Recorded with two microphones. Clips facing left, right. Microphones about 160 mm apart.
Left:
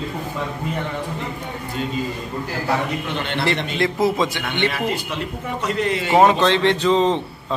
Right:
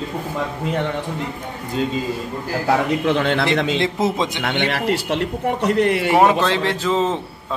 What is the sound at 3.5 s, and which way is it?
Speech, 20° right (ahead or behind).